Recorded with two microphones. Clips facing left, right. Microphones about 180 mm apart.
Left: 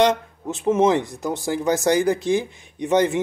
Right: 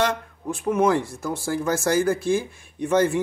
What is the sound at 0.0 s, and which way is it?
Speech, 20° left (ahead or behind).